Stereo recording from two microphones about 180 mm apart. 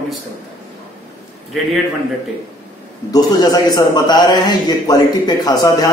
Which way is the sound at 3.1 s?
20° left (ahead or behind).